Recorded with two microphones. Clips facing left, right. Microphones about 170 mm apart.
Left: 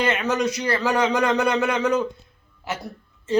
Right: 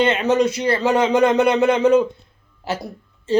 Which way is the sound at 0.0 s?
25° right (ahead or behind).